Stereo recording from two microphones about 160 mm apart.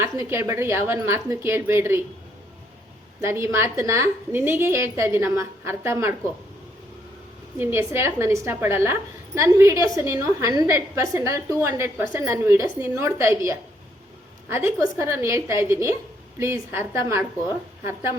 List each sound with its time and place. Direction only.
0.0 s a woman's voice: 15° right (ahead or behind)
3.2 s a woman's voice: 15° right (ahead or behind)
7.6 s a woman's voice: 15° right (ahead or behind)